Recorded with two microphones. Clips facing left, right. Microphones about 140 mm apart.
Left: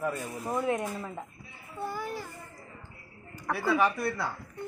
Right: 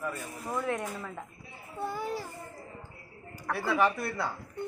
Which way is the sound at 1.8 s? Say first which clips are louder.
Right 1 dB; 25° right (ahead or behind).